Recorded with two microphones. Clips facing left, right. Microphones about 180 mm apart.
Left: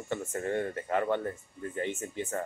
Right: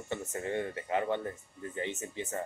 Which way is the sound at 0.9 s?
15° right (ahead or behind).